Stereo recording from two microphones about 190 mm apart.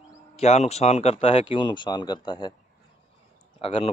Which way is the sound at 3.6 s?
30° left (ahead or behind).